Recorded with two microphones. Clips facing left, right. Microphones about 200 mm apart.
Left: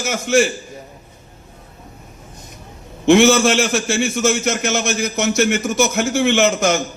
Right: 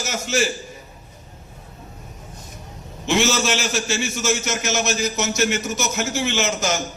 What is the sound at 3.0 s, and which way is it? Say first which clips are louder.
A man's voice: left 9 dB; 55° left (ahead or behind).